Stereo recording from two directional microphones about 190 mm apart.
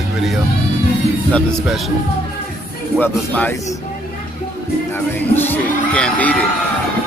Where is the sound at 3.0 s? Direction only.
10° left (ahead or behind).